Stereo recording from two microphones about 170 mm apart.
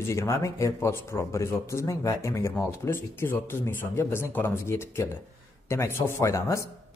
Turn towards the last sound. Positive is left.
turn(degrees=20)  # may be behind; listen again after turning